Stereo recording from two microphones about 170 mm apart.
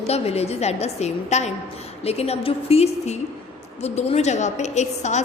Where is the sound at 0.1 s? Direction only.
40° left (ahead or behind).